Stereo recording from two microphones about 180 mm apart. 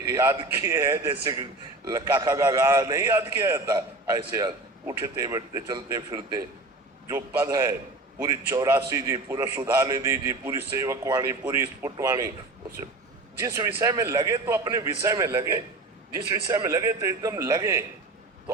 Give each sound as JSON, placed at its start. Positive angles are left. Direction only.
{"t": 0.1, "sound": "a man's voice", "side_deg": -15}
{"t": 13.4, "sound": "a man's voice", "side_deg": -15}